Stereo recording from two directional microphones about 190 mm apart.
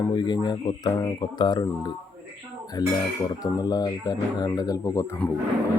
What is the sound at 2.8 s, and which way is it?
Speech, 20° left (ahead or behind).